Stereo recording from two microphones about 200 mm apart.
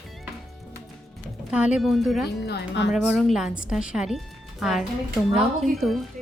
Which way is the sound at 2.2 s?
55° left (ahead or behind).